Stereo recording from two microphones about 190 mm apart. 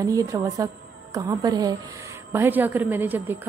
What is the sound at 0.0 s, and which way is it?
A woman's voice, 20° right (ahead or behind).